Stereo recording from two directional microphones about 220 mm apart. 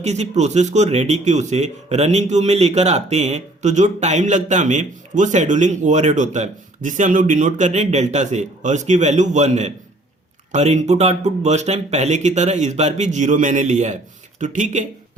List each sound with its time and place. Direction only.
0.0 s speech: 30° right (ahead or behind)